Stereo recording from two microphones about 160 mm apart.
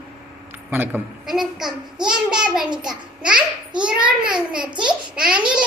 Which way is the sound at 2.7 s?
25° right (ahead or behind).